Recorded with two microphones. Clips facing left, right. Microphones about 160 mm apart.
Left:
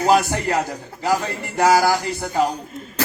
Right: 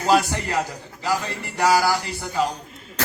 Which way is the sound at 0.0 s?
50° left (ahead or behind).